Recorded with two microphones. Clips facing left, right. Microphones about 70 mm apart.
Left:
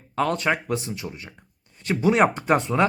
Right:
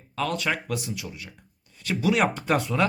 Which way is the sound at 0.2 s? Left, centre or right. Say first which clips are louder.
Left 4 dB; left.